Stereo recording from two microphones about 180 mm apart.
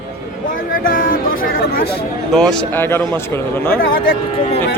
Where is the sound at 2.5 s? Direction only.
10° left (ahead or behind).